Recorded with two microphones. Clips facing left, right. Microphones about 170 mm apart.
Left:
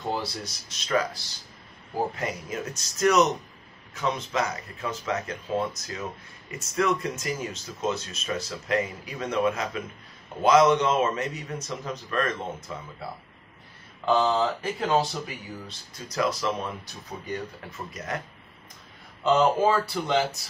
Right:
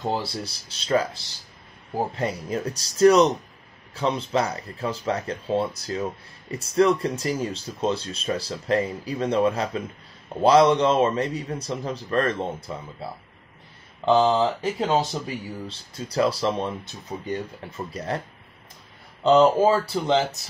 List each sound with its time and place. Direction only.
0.2 s speech: 30° right (ahead or behind)
2.1 s speech: 30° right (ahead or behind)
14.0 s speech: 25° right (ahead or behind)
19.6 s speech: 25° right (ahead or behind)